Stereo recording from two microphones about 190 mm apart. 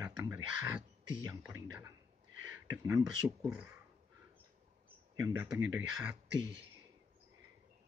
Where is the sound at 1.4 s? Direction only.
15° right (ahead or behind).